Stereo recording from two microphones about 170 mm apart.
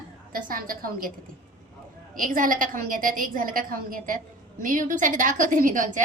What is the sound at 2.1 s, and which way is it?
A woman's voice, 55° right (ahead or behind).